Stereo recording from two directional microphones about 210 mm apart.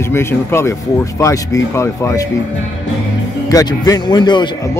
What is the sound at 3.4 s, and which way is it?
Speech, 15° left (ahead or behind).